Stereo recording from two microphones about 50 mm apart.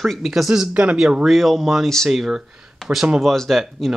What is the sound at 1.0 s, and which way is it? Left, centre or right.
Speech, centre.